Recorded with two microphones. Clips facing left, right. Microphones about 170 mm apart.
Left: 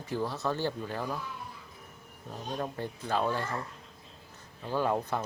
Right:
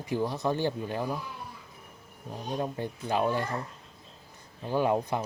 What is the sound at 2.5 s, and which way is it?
Speech, 15° right (ahead or behind).